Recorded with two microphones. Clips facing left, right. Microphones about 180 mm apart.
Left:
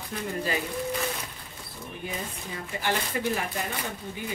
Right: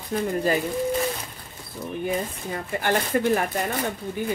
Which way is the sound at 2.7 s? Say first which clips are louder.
Right 6 dB; 50° right (ahead or behind).